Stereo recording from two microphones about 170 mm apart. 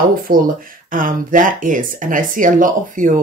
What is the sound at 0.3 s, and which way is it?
Speech, 55° right (ahead or behind).